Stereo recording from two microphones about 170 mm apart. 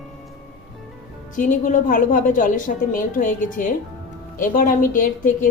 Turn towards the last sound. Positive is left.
turn(degrees=50)  # may be behind; listen again after turning